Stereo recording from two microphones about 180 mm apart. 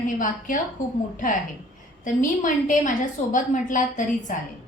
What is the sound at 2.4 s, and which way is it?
A woman's voice, 45° left (ahead or behind).